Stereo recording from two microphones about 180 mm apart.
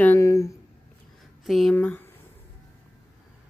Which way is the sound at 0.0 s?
15° left (ahead or behind).